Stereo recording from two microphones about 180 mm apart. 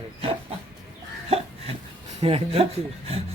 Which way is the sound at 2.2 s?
35° right (ahead or behind).